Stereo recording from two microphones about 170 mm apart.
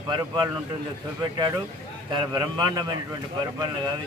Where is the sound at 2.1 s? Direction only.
25° right (ahead or behind).